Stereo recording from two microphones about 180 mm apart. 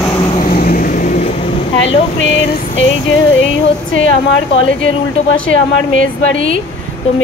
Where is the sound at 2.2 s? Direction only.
90° left.